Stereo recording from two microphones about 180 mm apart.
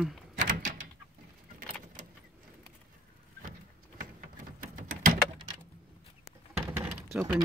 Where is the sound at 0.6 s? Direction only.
45° right (ahead or behind).